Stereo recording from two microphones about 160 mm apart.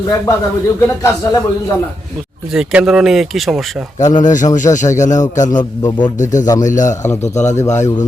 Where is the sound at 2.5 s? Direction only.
5° right (ahead or behind).